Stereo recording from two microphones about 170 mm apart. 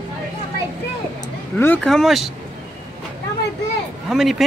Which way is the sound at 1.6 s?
10° left (ahead or behind).